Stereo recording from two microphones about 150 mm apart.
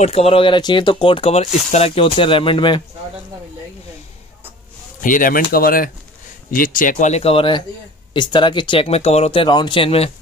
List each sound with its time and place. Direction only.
0.0 s speech: 40° left (ahead or behind)
5.0 s speech: 65° left (ahead or behind); by 10.1 s 40° left (ahead or behind)